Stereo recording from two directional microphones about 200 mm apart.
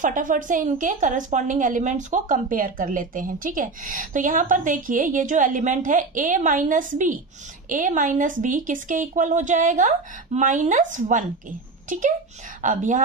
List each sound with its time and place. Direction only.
0.0 s a woman's voice: 40° right (ahead or behind)
12.6 s a woman's voice: 40° right (ahead or behind)